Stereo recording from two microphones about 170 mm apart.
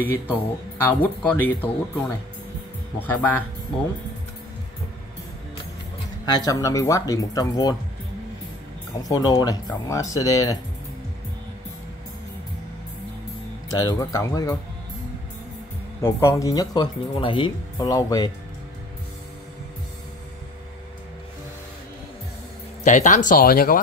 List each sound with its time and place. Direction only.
0.0 s speech: 10° left (ahead or behind)
3.0 s speech: 10° left (ahead or behind)
6.3 s speech: 20° left (ahead or behind)
9.0 s speech: 20° left (ahead or behind)
13.7 s speech: 20° left (ahead or behind)
16.0 s speech: 15° left (ahead or behind)
22.8 s speech: 45° left (ahead or behind)